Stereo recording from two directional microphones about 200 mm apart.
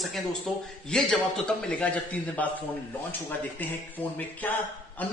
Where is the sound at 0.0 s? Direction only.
Centre (ahead or behind).